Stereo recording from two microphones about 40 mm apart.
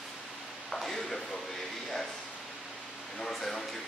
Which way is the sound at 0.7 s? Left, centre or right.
Centre.